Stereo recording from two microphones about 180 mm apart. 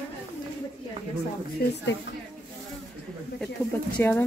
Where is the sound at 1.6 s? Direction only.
65° left (ahead or behind).